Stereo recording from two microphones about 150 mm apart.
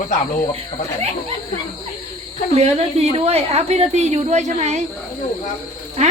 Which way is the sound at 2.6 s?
45° right (ahead or behind).